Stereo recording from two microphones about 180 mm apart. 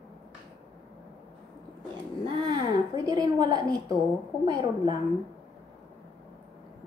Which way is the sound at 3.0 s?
20° right (ahead or behind).